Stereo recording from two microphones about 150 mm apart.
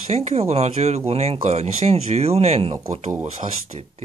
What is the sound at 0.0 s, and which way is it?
Speech, 45° right (ahead or behind).